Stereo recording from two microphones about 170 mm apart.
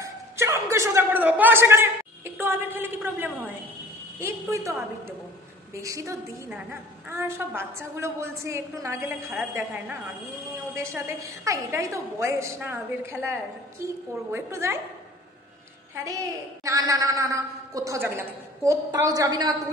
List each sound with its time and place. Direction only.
0.0 s a woman's voice: 15° right (ahead or behind)
5.8 s a woman's voice: 20° right (ahead or behind)
15.9 s a woman's voice: 20° right (ahead or behind)